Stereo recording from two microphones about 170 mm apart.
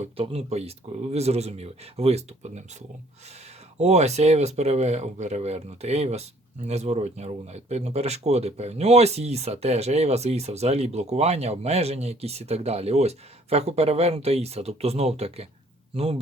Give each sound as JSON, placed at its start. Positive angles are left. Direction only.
{"t": 0.0, "sound": "speech", "side_deg": -35}